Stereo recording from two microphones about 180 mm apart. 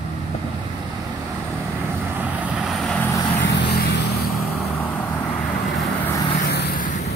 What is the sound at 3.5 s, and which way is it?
Vehicle, 70° left (ahead or behind).